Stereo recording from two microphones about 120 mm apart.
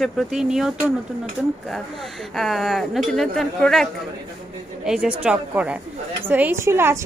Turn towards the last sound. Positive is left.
turn(degrees=-20)  # may be behind; listen again after turning